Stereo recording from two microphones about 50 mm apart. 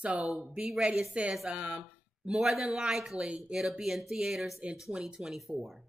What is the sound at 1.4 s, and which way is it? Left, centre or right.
Speech, right.